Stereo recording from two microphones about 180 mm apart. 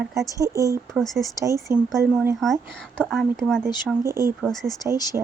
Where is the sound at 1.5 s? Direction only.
15° right (ahead or behind).